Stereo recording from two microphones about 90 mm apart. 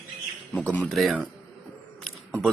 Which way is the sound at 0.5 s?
15° left (ahead or behind).